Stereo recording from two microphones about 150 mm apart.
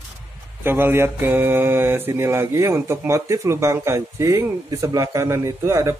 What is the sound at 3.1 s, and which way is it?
Speech, 20° right (ahead or behind).